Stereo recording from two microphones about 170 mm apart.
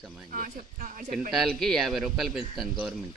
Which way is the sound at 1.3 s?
Centre (ahead or behind).